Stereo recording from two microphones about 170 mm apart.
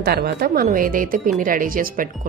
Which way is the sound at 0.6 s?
55° right (ahead or behind).